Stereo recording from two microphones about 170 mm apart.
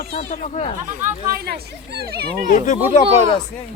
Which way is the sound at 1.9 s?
70° right (ahead or behind).